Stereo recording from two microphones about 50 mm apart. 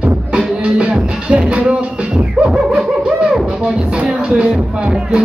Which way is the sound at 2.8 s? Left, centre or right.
Centre.